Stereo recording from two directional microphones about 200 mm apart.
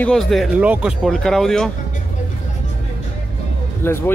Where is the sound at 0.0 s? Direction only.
Centre (ahead or behind).